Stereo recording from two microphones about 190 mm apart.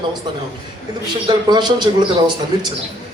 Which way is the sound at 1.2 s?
25° right (ahead or behind).